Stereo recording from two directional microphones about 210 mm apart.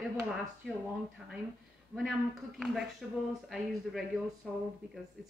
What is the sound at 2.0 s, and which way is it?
A woman's voice, centre (ahead or behind).